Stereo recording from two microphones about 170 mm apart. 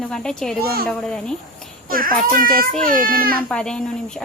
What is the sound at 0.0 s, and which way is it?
Speech, 5° left (ahead or behind).